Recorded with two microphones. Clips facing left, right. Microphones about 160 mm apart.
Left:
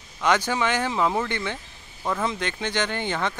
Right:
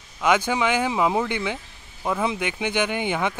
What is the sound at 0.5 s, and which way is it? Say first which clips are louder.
Speech: right 2 dB; 10° right (ahead or behind).